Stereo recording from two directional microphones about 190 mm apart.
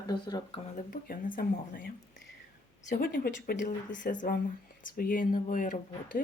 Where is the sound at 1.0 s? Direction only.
50° left (ahead or behind).